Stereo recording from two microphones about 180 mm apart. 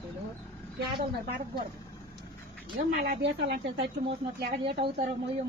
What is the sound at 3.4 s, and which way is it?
Speech, 65° right (ahead or behind).